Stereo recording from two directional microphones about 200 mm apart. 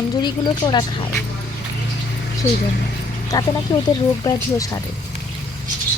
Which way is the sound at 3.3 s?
20° left (ahead or behind).